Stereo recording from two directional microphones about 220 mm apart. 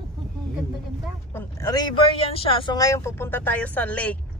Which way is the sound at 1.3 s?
15° left (ahead or behind).